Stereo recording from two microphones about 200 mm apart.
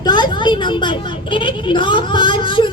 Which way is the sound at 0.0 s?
20° left (ahead or behind).